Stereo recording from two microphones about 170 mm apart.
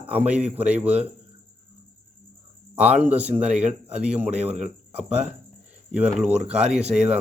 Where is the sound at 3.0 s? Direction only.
10° right (ahead or behind).